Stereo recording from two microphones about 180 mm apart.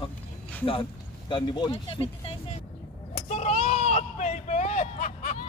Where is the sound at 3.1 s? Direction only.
40° left (ahead or behind).